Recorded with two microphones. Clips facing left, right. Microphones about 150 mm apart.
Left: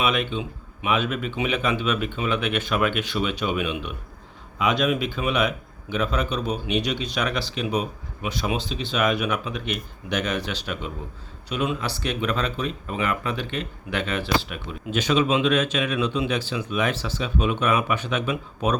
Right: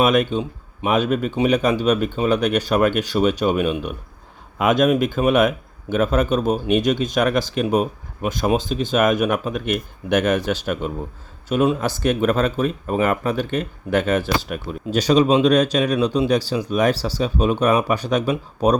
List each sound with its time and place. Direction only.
0.0 s speech: 45° right (ahead or behind)